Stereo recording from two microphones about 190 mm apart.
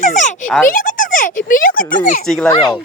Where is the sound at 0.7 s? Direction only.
45° left (ahead or behind).